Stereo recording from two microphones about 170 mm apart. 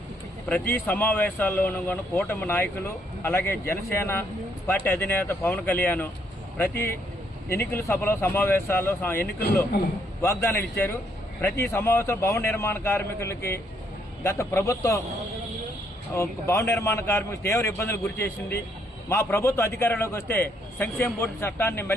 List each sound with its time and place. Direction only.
0.4 s speech: 10° left (ahead or behind)
9.2 s speech: 65° left (ahead or behind)
10.2 s speech: 15° left (ahead or behind)
16.1 s speech: 15° left (ahead or behind)